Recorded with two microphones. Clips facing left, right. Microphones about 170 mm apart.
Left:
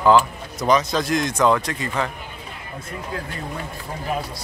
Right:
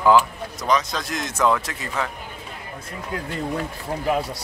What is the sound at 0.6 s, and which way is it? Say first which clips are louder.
Speech: left 4 dB; centre (ahead or behind).